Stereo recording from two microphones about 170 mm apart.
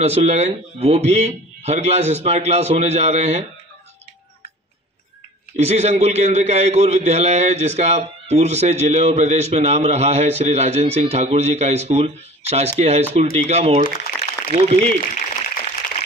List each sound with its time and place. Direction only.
0.0 s a man's voice: 40° right (ahead or behind)
5.6 s a man's voice: 40° right (ahead or behind)
14.1 s a sound: 80° left
14.5 s a man's voice: 35° right (ahead or behind)